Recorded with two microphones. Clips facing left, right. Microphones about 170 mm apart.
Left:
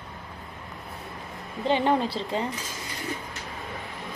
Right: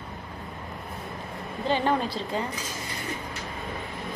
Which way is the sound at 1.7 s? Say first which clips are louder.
Left 2 dB; 20° left (ahead or behind).